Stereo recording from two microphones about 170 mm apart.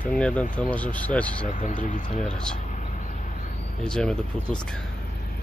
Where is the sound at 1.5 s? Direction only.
50° left (ahead or behind).